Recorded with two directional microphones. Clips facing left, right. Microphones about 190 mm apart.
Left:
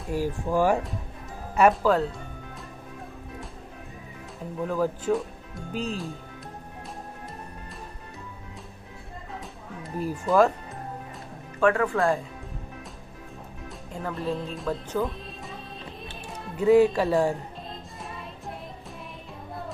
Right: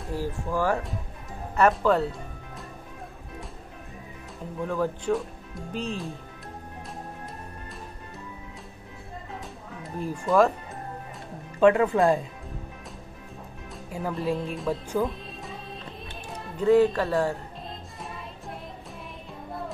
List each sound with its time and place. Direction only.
0.1 s speech: 15° left (ahead or behind)
1.7 s speech: centre (ahead or behind)
4.6 s speech: 5° left (ahead or behind)
9.8 s speech: 5° left (ahead or behind)
11.6 s speech: 20° right (ahead or behind)
13.8 s speech: 10° right (ahead or behind); by 17.4 s 15° left (ahead or behind)